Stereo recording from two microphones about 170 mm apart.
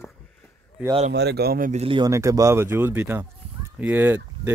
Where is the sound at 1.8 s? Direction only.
30° right (ahead or behind).